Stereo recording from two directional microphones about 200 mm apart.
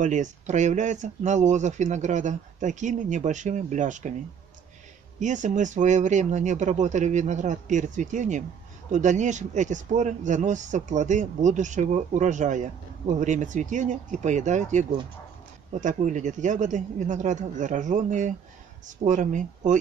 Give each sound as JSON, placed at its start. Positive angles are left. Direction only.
{"t": 0.0, "sound": "speech", "side_deg": -35}
{"t": 5.2, "sound": "speech", "side_deg": -40}